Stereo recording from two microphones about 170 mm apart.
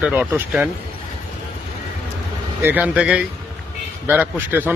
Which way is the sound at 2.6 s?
10° right (ahead or behind).